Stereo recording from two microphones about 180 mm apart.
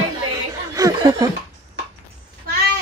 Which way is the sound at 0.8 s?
20° right (ahead or behind).